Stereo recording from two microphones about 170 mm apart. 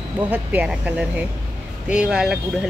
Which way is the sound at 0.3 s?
10° right (ahead or behind).